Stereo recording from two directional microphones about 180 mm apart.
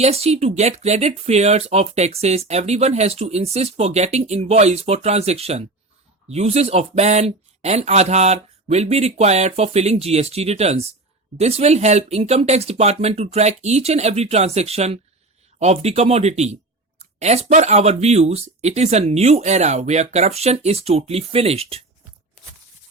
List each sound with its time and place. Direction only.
0.0 s speech: 35° right (ahead or behind)